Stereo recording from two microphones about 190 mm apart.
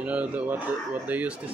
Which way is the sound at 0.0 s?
5° right (ahead or behind).